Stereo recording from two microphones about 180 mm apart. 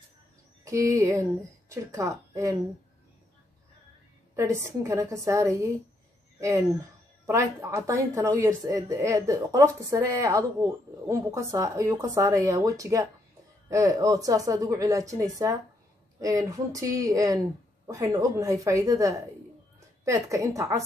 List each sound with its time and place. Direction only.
0.7 s a woman's voice: 15° right (ahead or behind)
4.4 s a woman's voice: 15° right (ahead or behind)